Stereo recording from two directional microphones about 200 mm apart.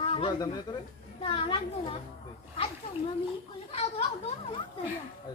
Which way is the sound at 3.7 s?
30° left (ahead or behind).